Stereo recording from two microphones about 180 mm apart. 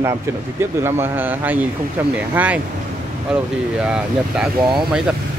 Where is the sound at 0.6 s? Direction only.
15° right (ahead or behind).